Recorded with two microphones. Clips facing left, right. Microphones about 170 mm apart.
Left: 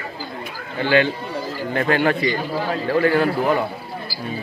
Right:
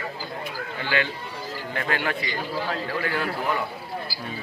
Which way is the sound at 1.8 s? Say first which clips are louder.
Left 10 dB; 40° left (ahead or behind).